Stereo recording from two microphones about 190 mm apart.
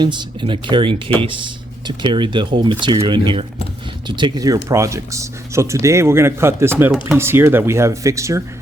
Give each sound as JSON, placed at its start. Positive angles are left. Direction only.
{"t": 0.0, "sound": "speech", "side_deg": -25}